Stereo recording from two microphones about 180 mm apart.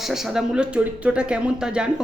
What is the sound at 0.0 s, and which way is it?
A man's voice, centre (ahead or behind).